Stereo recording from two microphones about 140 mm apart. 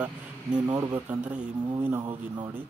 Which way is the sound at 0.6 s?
25° right (ahead or behind).